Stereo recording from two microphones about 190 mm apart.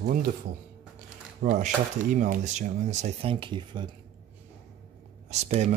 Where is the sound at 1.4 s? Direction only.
40° right (ahead or behind); by 3.9 s 25° right (ahead or behind).